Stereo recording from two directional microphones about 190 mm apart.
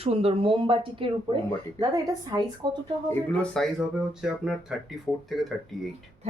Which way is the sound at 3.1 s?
5° left (ahead or behind).